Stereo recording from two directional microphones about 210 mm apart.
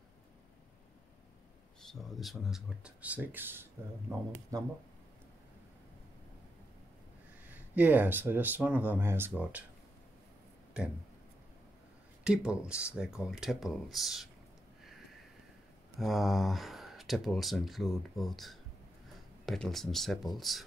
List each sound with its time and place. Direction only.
1.8 s speech: centre (ahead or behind); by 4.7 s 15° right (ahead or behind)
7.4 s speech: 10° right (ahead or behind)
10.8 s speech: 5° right (ahead or behind)
12.2 s speech: 5° right (ahead or behind)
16.0 s speech: centre (ahead or behind)